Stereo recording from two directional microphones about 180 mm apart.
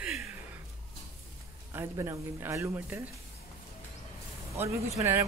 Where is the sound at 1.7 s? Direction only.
15° right (ahead or behind).